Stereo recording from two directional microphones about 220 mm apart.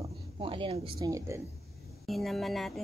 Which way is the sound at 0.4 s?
25° right (ahead or behind).